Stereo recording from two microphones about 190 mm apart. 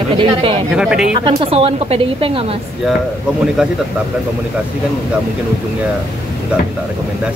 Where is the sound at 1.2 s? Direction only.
30° right (ahead or behind).